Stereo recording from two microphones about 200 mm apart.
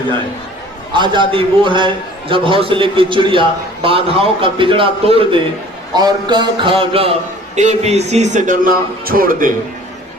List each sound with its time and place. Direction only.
0.9 s a man's voice: 25° right (ahead or behind); by 9.5 s 45° right (ahead or behind)